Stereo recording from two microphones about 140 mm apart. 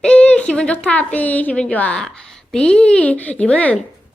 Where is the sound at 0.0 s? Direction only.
10° left (ahead or behind).